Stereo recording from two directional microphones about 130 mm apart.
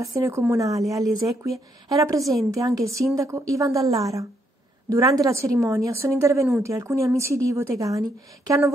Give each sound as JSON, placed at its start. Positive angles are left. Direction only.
{"t": 0.0, "sound": "a woman's voice", "side_deg": -25}